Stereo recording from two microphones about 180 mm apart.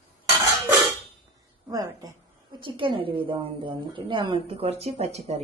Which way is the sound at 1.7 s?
20° right (ahead or behind).